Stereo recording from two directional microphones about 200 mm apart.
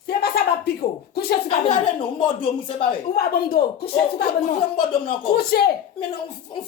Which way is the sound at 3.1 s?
50° left (ahead or behind).